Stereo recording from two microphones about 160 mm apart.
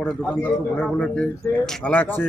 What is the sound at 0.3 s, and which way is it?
A man's voice, 10° left (ahead or behind).